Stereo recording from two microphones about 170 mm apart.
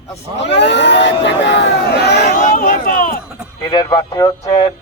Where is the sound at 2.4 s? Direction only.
50° left (ahead or behind).